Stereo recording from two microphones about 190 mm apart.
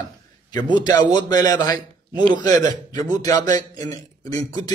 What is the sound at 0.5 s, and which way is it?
A man's voice, 25° left (ahead or behind).